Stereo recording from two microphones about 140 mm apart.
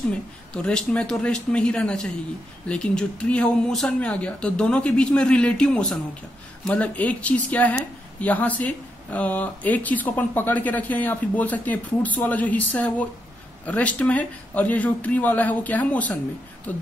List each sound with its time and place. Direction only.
0.5 s speech: 5° left (ahead or behind)